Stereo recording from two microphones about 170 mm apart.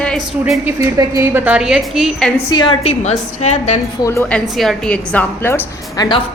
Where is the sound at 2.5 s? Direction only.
25° left (ahead or behind).